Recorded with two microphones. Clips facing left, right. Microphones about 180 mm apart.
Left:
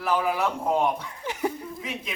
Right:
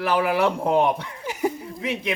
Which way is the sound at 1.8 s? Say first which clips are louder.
Right 7 dB; 70° right (ahead or behind).